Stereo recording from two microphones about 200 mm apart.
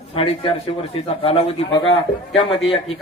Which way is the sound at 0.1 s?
25° left (ahead or behind).